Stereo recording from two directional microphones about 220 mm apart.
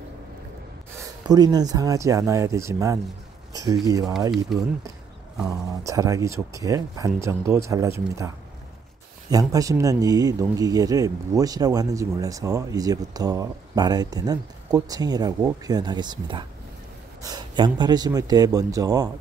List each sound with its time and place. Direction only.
1.2 s speech: 20° right (ahead or behind)
4.5 s speech: centre (ahead or behind)
5.9 s speech: 15° right (ahead or behind)
9.3 s speech: 15° right (ahead or behind)